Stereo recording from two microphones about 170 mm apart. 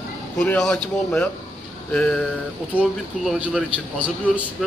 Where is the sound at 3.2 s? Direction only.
5° right (ahead or behind).